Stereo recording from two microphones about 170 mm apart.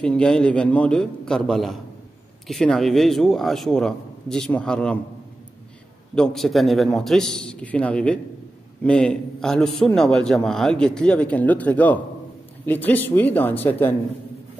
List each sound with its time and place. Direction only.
0.0 s speech: 5° left (ahead or behind)
6.1 s speech: 5° left (ahead or behind)